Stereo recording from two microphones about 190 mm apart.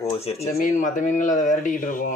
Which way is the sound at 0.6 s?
40° left (ahead or behind).